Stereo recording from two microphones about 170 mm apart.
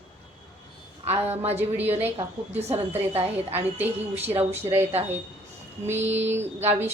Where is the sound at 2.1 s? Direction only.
40° right (ahead or behind).